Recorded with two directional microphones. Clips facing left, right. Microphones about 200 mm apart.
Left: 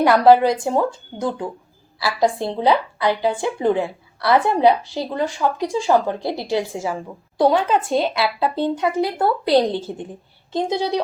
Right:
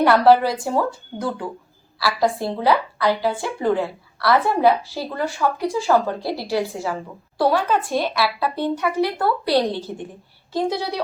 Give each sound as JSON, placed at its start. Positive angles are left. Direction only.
{"t": 0.0, "sound": "a woman's voice", "side_deg": 15}